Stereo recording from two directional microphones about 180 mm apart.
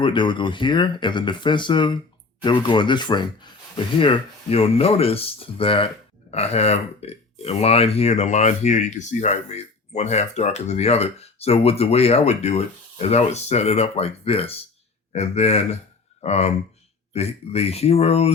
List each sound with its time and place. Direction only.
0.0 s speech: 25° left (ahead or behind)